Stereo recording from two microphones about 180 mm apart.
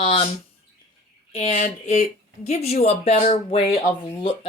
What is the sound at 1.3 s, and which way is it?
Speech, 40° left (ahead or behind).